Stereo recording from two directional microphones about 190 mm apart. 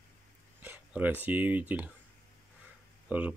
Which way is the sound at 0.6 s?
10° right (ahead or behind).